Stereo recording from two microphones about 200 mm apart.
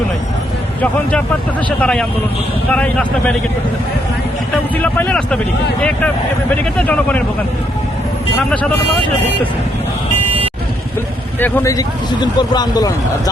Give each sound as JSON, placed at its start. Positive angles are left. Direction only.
{"t": 1.8, "sound": "speech", "side_deg": 5}
{"t": 4.5, "sound": "speech", "side_deg": 5}
{"t": 6.7, "sound": "speech", "side_deg": 5}
{"t": 8.4, "sound": "speech", "side_deg": 5}
{"t": 11.3, "sound": "speech", "side_deg": 10}